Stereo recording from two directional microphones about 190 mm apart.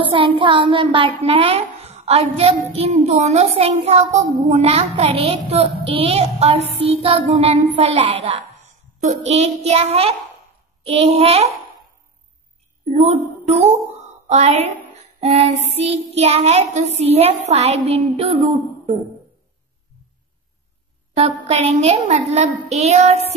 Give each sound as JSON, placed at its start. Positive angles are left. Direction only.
{"t": 0.0, "sound": "a woman's voice", "side_deg": -30}
{"t": 12.9, "sound": "speech", "side_deg": -35}
{"t": 14.2, "sound": "a sound", "side_deg": -35}
{"t": 15.7, "sound": "a woman's voice", "side_deg": -35}
{"t": 21.1, "sound": "a woman's voice", "side_deg": -35}